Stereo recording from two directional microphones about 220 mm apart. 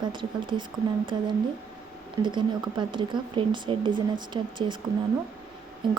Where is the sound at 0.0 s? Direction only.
20° right (ahead or behind).